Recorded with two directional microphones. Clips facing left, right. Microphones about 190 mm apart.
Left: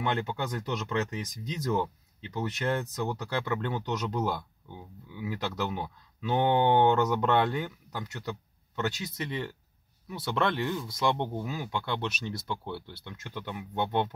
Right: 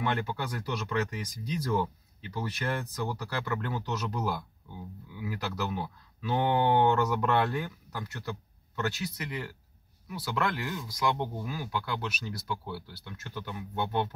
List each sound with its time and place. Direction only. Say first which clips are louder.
0.0 s speech: left 1 dB; 25° left (ahead or behind)